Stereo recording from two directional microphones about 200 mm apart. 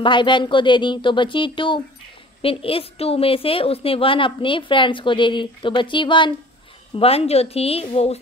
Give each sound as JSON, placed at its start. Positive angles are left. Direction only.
{"t": 0.0, "sound": "a woman's voice", "side_deg": 25}